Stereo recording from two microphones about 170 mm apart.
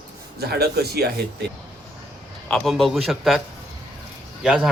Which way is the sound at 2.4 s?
5° left (ahead or behind).